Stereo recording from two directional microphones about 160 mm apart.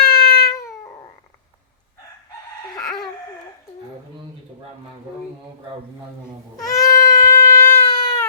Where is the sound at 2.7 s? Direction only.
Centre (ahead or behind).